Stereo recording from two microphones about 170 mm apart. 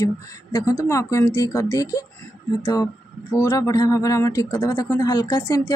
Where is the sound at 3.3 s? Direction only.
20° left (ahead or behind).